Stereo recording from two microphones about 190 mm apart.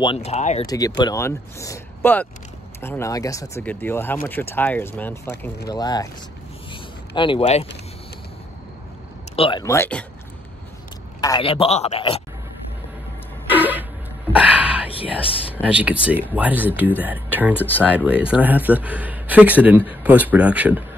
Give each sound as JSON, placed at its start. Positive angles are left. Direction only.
{"t": 0.0, "sound": "speech", "side_deg": 30}
{"t": 0.7, "sound": "a man's voice", "side_deg": 20}
{"t": 6.7, "sound": "a sound", "side_deg": 25}
{"t": 9.3, "sound": "speech", "side_deg": 30}
{"t": 11.1, "sound": "a man's voice", "side_deg": 20}
{"t": 13.5, "sound": "a sound", "side_deg": -10}
{"t": 15.6, "sound": "speech", "side_deg": -5}